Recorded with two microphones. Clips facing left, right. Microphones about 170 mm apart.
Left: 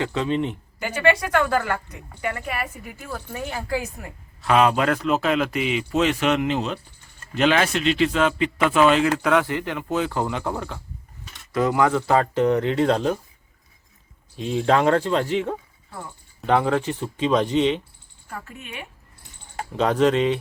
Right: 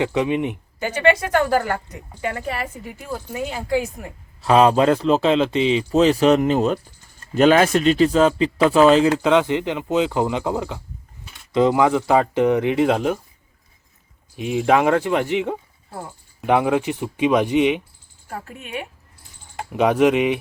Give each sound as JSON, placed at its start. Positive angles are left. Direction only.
{"t": 0.0, "sound": "speech", "side_deg": -15}
{"t": 1.1, "sound": "a woman's voice", "side_deg": -25}
{"t": 4.4, "sound": "a man's voice", "side_deg": -30}
{"t": 9.1, "sound": "speech", "side_deg": -20}
{"t": 14.3, "sound": "speech", "side_deg": -10}
{"t": 18.3, "sound": "a man's voice", "side_deg": -35}
{"t": 19.7, "sound": "speech", "side_deg": -10}